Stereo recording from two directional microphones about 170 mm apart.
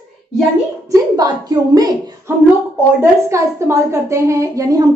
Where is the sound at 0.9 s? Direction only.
20° right (ahead or behind).